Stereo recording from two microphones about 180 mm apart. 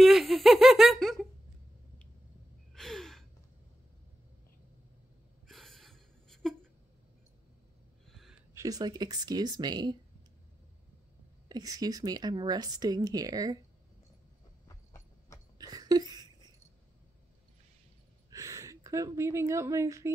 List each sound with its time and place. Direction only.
0.0 s giggle: centre (ahead or behind)
2.7 s gasp: centre (ahead or behind)
5.5 s a sound: centre (ahead or behind)
8.1 s a sound: centre (ahead or behind)
8.5 s a woman's voice: 20° right (ahead or behind)
11.4 s a woman's voice: 20° right (ahead or behind)
14.7 s horse: 15° left (ahead or behind)
15.5 s a sound: 20° right (ahead or behind)
18.3 s a woman's voice: 15° right (ahead or behind)